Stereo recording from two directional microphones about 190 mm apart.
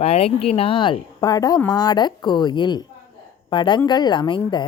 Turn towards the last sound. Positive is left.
turn(degrees=25)  # may be behind; listen again after turning